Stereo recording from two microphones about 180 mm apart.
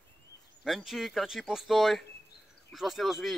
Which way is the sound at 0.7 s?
Centre (ahead or behind).